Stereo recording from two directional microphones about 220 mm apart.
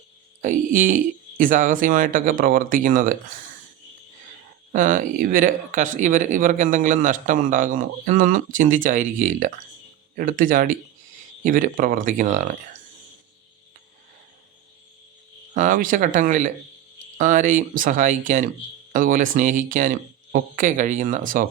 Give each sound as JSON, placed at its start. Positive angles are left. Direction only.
{"t": 0.4, "sound": "speech", "side_deg": -35}
{"t": 4.7, "sound": "speech", "side_deg": -35}
{"t": 15.5, "sound": "speech", "side_deg": -40}